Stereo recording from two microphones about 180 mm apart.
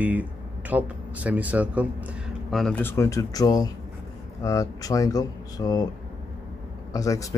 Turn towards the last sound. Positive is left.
turn(degrees=20)  # may be behind; listen again after turning